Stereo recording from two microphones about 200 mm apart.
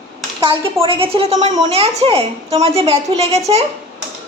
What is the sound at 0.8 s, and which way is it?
A woman's voice, 25° right (ahead or behind).